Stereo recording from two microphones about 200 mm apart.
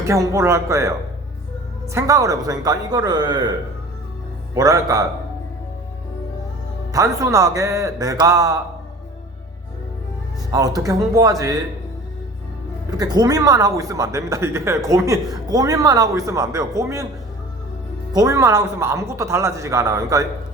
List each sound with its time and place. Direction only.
0.1 s speech: 15° right (ahead or behind)
4.5 s speech: 15° right (ahead or behind)
6.9 s speech: 15° right (ahead or behind)
10.8 s speech: 15° right (ahead or behind)
12.9 s speech: 20° right (ahead or behind)
18.1 s speech: 20° right (ahead or behind)